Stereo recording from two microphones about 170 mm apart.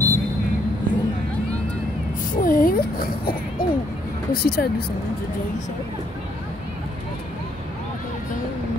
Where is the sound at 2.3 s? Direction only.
55° left (ahead or behind).